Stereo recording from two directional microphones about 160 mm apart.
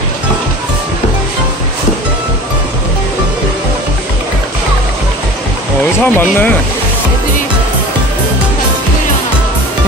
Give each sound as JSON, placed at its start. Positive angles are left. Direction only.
{"t": 6.0, "sound": "speech", "side_deg": 10}